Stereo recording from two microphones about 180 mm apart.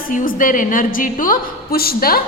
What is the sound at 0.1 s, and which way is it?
A woman's voice, 50° left (ahead or behind).